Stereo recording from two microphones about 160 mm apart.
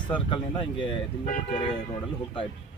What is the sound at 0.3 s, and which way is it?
Speech, 35° left (ahead or behind).